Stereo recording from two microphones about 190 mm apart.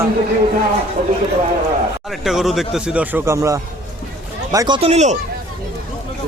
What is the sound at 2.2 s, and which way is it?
A man's voice, centre (ahead or behind).